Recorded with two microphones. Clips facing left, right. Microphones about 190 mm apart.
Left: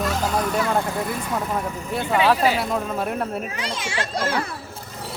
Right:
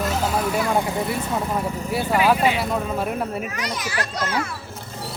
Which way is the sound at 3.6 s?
25° left (ahead or behind).